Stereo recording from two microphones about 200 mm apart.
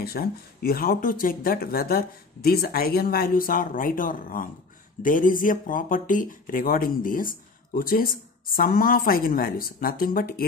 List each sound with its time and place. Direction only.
0.0 s speech: 50° left (ahead or behind)